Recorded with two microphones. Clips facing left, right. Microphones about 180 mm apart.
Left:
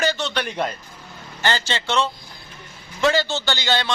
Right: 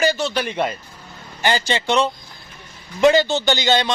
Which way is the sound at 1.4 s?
15° right (ahead or behind).